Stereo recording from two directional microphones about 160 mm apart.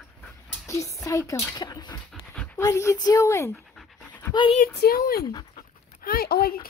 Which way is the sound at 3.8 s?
5° left (ahead or behind).